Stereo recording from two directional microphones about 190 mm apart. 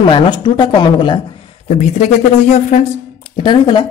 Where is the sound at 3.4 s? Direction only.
25° left (ahead or behind).